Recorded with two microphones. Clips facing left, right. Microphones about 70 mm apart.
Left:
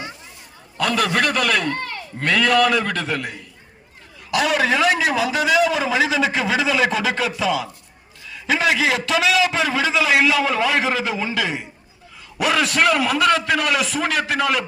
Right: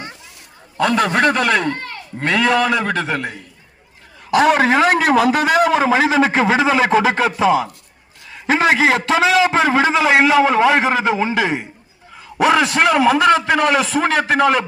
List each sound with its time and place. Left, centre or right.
0.8 s a man's voice: right
4.3 s a man's voice: right